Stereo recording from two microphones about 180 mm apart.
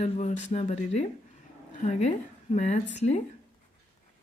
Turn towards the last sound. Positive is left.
turn(degrees=40)  # may be behind; listen again after turning